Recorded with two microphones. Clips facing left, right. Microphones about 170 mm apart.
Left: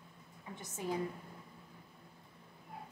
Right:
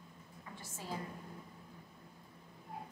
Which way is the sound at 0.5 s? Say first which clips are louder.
Left 8 dB; 20° left (ahead or behind).